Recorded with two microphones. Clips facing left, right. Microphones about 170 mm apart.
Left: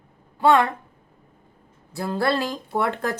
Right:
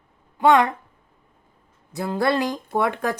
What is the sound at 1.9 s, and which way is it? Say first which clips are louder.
Speech: right 1 dB; 20° right (ahead or behind).